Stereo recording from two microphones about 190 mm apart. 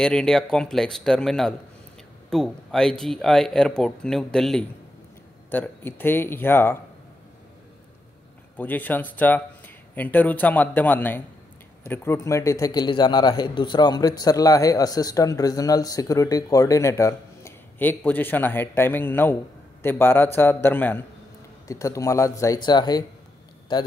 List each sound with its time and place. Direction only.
0.0 s a man's voice: 5° left (ahead or behind)
8.5 s a man's voice: 10° left (ahead or behind)